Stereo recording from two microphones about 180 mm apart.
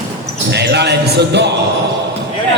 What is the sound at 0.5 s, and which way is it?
Music, 70° right (ahead or behind).